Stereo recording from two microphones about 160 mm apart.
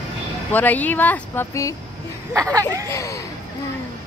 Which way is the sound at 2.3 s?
20° right (ahead or behind).